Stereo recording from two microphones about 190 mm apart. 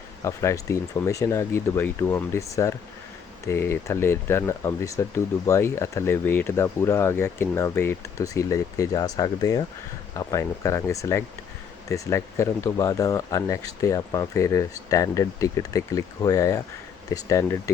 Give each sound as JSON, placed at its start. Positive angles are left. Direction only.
{"t": 0.2, "sound": "speech", "side_deg": 15}